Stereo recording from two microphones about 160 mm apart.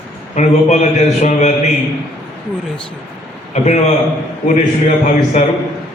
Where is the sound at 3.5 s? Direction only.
45° left (ahead or behind).